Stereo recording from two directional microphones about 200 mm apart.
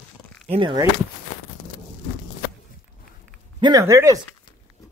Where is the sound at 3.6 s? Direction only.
20° right (ahead or behind).